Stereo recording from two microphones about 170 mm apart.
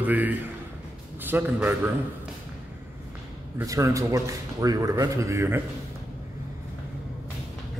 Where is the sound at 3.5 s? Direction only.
20° right (ahead or behind).